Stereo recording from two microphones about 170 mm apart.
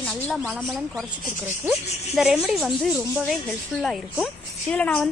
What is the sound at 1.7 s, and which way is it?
Speech, 5° right (ahead or behind).